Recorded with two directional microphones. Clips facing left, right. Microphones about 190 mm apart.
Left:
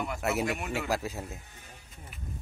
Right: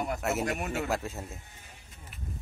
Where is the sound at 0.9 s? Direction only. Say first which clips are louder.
Left 1 dB; centre (ahead or behind).